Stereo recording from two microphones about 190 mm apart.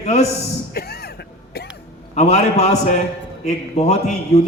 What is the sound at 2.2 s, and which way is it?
A man's voice, 35° left (ahead or behind).